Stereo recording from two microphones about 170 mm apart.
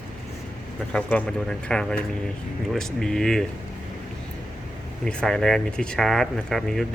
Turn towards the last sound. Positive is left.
turn(degrees=0)  # may be behind; listen again after turning